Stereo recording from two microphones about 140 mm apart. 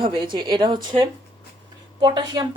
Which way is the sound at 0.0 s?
35° right (ahead or behind).